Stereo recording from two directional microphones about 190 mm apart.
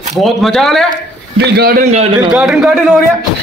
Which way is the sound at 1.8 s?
35° right (ahead or behind).